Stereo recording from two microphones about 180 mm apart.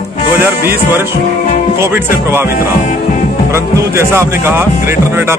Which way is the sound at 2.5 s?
45° left (ahead or behind).